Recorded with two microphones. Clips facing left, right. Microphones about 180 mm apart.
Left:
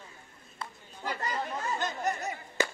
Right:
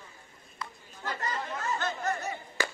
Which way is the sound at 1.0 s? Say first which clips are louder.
Left 1 dB; 15° left (ahead or behind).